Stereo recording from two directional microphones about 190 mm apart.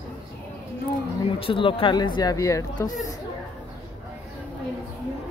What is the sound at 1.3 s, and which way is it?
Speech, 30° left (ahead or behind).